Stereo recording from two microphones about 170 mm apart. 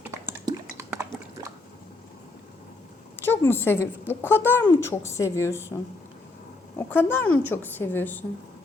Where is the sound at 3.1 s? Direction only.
15° left (ahead or behind).